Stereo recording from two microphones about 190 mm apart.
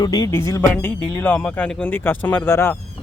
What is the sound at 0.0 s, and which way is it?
Speech, 20° left (ahead or behind).